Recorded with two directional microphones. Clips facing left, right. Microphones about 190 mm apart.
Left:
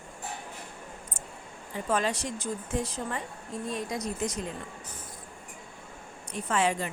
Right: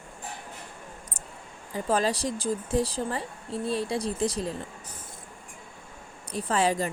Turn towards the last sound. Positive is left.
turn(degrees=-35)  # may be behind; listen again after turning